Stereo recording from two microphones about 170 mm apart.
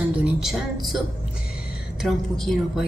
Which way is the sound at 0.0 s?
5° right (ahead or behind).